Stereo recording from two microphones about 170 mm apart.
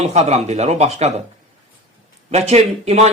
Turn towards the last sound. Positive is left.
turn(degrees=-40)  # may be behind; listen again after turning